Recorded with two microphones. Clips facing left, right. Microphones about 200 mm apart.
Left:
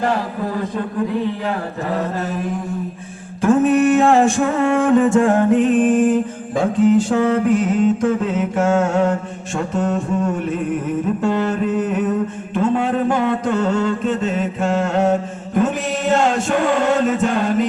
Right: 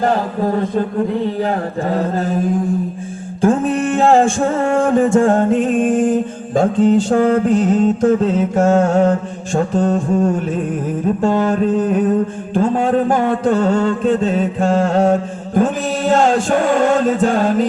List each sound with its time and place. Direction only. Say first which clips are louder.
0.0 s music: right 4 dB; 40° right (ahead or behind)
3.4 s a sound: left 2 dB; 30° right (ahead or behind)
6.7 s music: even; 30° right (ahead or behind)
7.1 s chant: right 3 dB; 45° right (ahead or behind)
7.4 s music: right 2 dB; 30° right (ahead or behind)
11.2 s chant: right 6 dB; 45° right (ahead or behind)
11.7 s music: right 4 dB; 30° right (ahead or behind)
16.1 s chant: right 3 dB; 45° right (ahead or behind)